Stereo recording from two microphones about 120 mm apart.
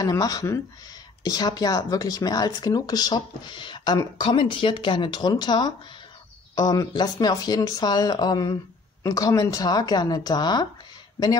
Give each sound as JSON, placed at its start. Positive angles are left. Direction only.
{"t": 0.0, "sound": "speech", "side_deg": 30}